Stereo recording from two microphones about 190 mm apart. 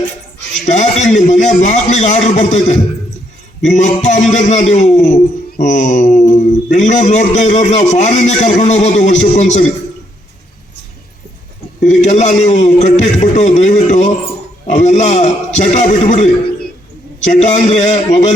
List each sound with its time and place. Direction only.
0.6 s a man's voice: 35° left (ahead or behind)
11.8 s a man's voice: 40° left (ahead or behind)